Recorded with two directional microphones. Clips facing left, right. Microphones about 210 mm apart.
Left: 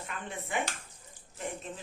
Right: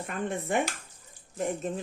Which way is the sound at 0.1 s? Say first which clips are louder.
Right 8 dB; 45° right (ahead or behind).